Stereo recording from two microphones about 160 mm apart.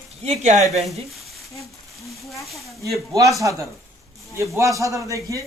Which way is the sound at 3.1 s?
20° right (ahead or behind).